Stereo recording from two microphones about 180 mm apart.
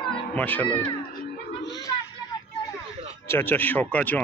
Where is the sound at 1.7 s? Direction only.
20° left (ahead or behind).